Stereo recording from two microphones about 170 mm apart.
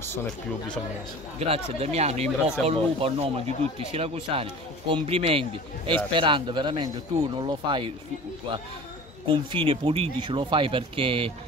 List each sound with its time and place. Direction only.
1.4 s speech: 40° right (ahead or behind)
9.3 s speech: 30° right (ahead or behind)